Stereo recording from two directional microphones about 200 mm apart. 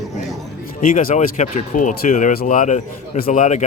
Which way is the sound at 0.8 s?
40° left (ahead or behind).